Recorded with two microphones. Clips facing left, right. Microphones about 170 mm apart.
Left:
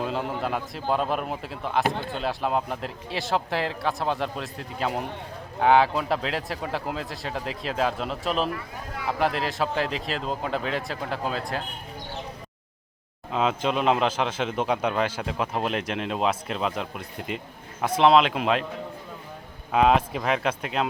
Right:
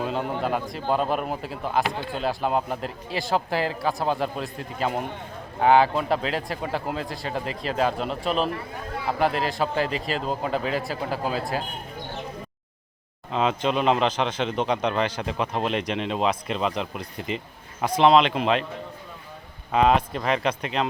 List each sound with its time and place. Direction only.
0.0 s speech: centre (ahead or behind)
13.3 s speech: 5° left (ahead or behind)
19.7 s speech: 5° left (ahead or behind)